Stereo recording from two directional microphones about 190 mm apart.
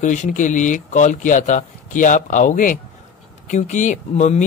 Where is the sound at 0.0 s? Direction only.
40° left (ahead or behind).